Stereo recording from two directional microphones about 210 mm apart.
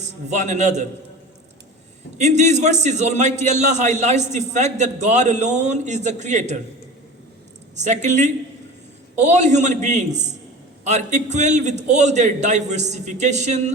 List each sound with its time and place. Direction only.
0.3 s a man's voice: 35° right (ahead or behind)
2.1 s a man's voice: 35° right (ahead or behind)
7.8 s a man's voice: 35° right (ahead or behind)